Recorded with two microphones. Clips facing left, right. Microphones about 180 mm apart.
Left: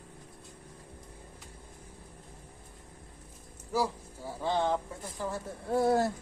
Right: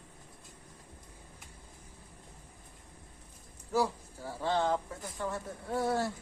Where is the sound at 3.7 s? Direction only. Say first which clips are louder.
Even; 10° left (ahead or behind).